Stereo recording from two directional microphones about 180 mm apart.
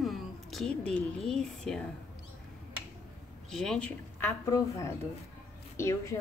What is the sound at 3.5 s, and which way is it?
A woman's voice, centre (ahead or behind).